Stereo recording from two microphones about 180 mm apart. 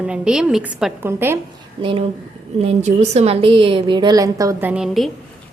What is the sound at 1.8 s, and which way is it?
A woman's voice, 30° right (ahead or behind).